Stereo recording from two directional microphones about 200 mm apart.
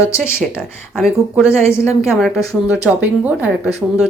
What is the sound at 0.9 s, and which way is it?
Speech, centre (ahead or behind).